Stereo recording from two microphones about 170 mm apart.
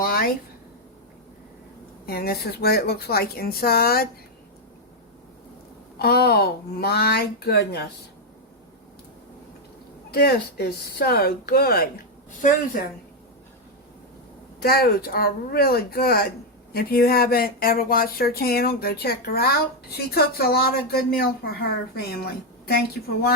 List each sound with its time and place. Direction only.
0.0 s a sound: 60° left (ahead or behind)
2.0 s speech: 65° left (ahead or behind)
6.0 s speech: 65° left (ahead or behind)
10.1 s speech: 70° left (ahead or behind)
14.6 s speech: 65° left (ahead or behind)